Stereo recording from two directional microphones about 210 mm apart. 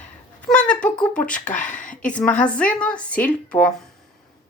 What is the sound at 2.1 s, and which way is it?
A woman's voice, 5° left (ahead or behind).